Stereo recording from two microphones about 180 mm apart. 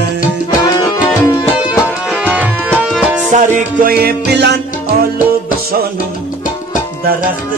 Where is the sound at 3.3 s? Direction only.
40° right (ahead or behind).